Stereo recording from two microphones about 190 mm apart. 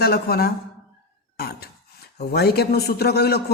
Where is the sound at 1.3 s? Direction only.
55° left (ahead or behind).